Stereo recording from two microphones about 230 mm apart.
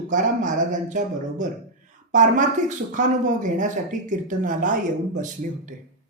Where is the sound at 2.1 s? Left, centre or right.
Right.